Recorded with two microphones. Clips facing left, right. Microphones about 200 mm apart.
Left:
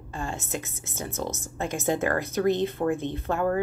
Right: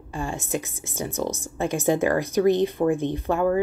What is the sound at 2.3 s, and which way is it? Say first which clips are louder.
Speech: right 5 dB; 15° right (ahead or behind).